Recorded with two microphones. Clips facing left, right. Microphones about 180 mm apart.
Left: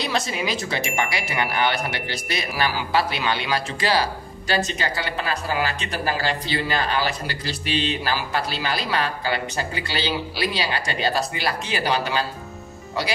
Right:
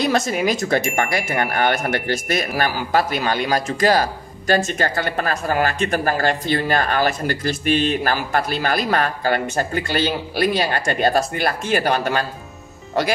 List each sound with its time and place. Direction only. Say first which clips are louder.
0.0 s speech: right 6 dB; 50° right (ahead or behind)